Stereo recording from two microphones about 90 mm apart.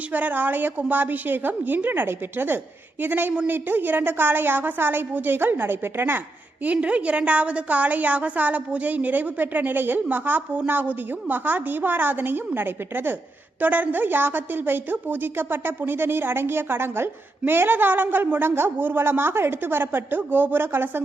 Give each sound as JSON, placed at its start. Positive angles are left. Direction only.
{"t": 0.1, "sound": "a woman's voice", "side_deg": -20}